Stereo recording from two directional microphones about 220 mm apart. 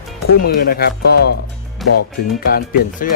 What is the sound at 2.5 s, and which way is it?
Speech, 45° left (ahead or behind).